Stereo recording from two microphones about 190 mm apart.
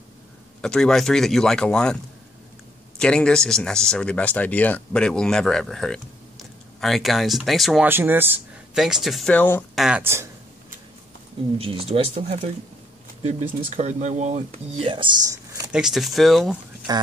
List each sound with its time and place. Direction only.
0.6 s speech: 5° left (ahead or behind)
3.0 s speech: 5° left (ahead or behind)
9.8 s speech: 10° right (ahead or behind)
11.5 s speech: 30° right (ahead or behind)
15.7 s speech: centre (ahead or behind)